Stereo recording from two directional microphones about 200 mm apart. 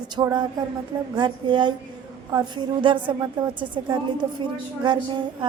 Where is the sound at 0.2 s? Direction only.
20° right (ahead or behind).